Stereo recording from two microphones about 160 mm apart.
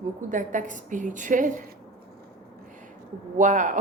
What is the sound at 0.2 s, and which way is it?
A woman's voice, 50° right (ahead or behind).